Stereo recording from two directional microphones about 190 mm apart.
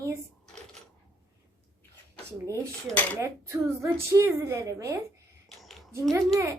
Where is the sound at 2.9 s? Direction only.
15° right (ahead or behind).